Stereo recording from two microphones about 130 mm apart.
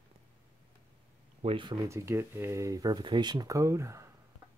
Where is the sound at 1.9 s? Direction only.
20° right (ahead or behind).